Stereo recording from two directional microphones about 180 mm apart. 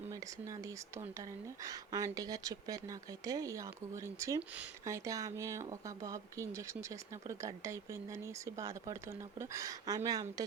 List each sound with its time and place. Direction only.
0.1 s speech: 15° right (ahead or behind)